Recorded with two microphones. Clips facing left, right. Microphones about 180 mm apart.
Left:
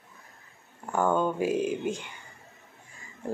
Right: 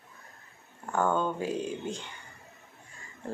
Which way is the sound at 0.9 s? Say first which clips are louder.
Left 2 dB; 15° left (ahead or behind).